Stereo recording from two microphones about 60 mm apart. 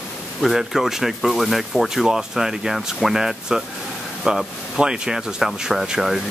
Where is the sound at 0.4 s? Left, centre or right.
Centre.